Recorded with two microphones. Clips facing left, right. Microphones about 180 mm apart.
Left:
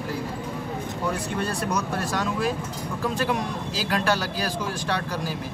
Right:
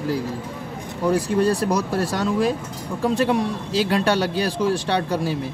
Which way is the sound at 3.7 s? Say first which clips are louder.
Right 5 dB; 30° right (ahead or behind).